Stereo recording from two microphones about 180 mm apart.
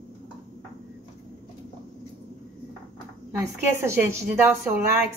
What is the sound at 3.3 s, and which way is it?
A woman's voice, 15° right (ahead or behind).